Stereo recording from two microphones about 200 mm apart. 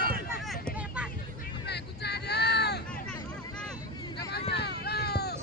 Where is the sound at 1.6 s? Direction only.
55° left (ahead or behind).